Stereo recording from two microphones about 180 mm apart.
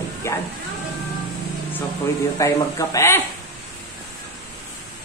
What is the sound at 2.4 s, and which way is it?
Speech, 15° left (ahead or behind).